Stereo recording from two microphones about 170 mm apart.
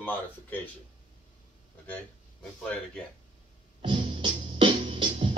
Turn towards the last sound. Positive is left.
turn(degrees=-30)  # may be behind; listen again after turning